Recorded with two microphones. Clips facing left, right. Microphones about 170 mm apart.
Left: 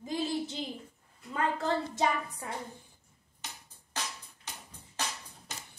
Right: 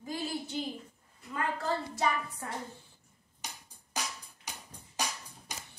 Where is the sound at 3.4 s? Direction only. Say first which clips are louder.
Right 1 dB; 10° right (ahead or behind).